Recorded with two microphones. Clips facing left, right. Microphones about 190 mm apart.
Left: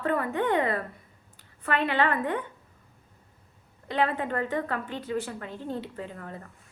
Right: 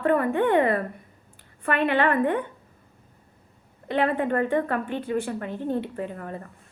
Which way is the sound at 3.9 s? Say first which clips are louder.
Right 4 dB; 55° right (ahead or behind).